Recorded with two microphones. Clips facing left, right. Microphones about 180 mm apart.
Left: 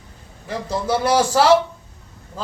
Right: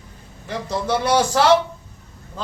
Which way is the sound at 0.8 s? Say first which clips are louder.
Left 1 dB; 5° left (ahead or behind).